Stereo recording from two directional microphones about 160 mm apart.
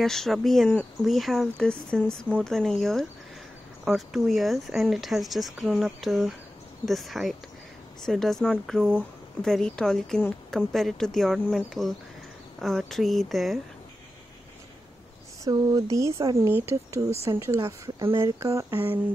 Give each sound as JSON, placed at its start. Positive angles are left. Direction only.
{"t": 0.0, "sound": "speech", "side_deg": 0}
{"t": 15.4, "sound": "speech", "side_deg": -20}